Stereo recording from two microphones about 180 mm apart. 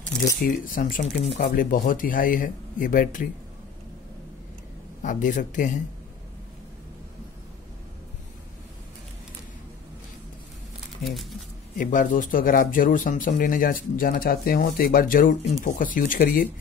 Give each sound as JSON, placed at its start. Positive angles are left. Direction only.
{"t": 0.4, "sound": "speech", "side_deg": 50}
{"t": 5.0, "sound": "speech", "side_deg": 45}
{"t": 11.1, "sound": "speech", "side_deg": 0}
{"t": 11.8, "sound": "speech", "side_deg": 45}